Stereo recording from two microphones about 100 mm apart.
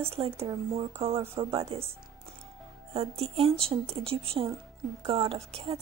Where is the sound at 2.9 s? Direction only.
80° right.